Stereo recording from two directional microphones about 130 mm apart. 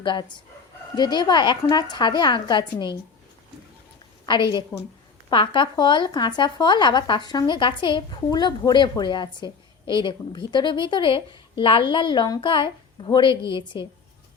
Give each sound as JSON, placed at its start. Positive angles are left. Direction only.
{"t": 0.0, "sound": "speech", "side_deg": 35}
{"t": 5.3, "sound": "speech", "side_deg": 40}